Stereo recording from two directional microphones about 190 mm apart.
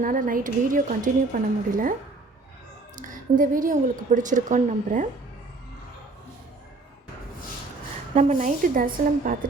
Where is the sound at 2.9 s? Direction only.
45° right (ahead or behind).